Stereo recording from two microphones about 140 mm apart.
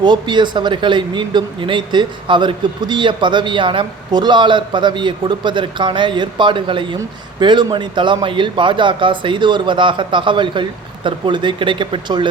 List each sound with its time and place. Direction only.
0.0 s speech: 30° right (ahead or behind)